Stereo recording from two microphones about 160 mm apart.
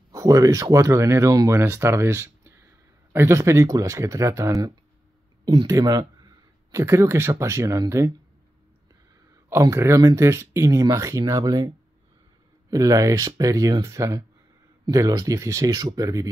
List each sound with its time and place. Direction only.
0.1 s speech: 20° right (ahead or behind)
9.5 s speech: 20° right (ahead or behind)